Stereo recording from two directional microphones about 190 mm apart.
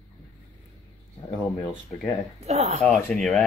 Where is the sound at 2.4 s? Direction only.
35° right (ahead or behind).